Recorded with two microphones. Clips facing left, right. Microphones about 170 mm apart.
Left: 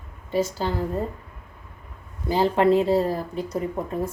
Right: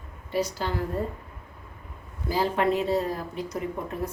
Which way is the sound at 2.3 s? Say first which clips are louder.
Left 5 dB; 25° left (ahead or behind).